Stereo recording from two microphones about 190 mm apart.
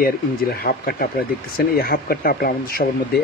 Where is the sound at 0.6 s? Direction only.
50° left (ahead or behind).